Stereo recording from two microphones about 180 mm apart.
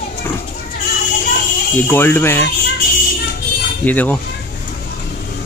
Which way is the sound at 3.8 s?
10° left (ahead or behind).